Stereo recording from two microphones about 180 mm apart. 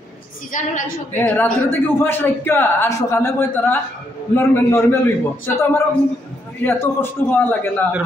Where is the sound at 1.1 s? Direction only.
10° left (ahead or behind).